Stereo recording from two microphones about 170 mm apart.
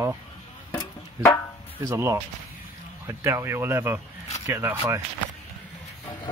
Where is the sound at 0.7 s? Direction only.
15° left (ahead or behind).